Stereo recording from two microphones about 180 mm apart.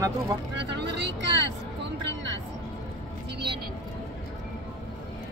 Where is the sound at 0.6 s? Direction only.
70° right (ahead or behind).